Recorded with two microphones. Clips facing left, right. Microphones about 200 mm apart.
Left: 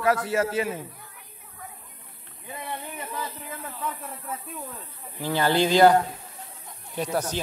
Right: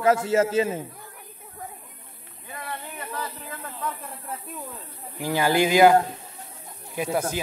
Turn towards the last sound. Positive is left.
turn(degrees=-10)  # may be behind; listen again after turning